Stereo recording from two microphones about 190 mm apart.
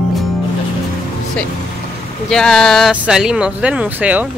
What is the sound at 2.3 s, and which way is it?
Speech, 5° left (ahead or behind).